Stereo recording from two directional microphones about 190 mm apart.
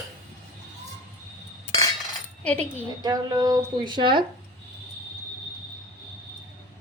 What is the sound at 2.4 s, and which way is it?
Speech, 5° left (ahead or behind).